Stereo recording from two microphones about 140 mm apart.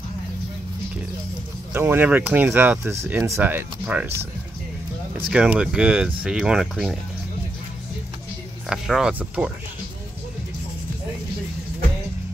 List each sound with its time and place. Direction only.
1.7 s speech: 15° right (ahead or behind)
5.3 s speech: 5° right (ahead or behind)
8.6 s speech: 5° right (ahead or behind)